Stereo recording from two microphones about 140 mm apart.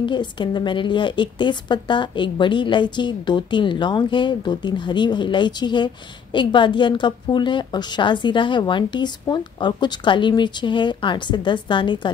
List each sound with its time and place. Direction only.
0.0 s a woman's voice: 35° left (ahead or behind)